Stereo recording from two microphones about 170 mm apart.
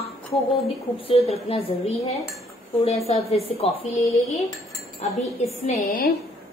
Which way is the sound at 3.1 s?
35° left (ahead or behind).